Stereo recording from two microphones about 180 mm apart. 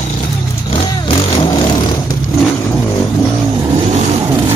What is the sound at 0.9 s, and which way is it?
Vehicle, 30° left (ahead or behind).